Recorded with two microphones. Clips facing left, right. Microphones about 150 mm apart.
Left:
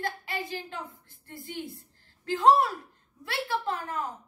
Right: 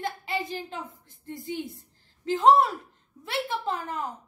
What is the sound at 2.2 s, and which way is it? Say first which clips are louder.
Speech: right 2 dB; 20° right (ahead or behind).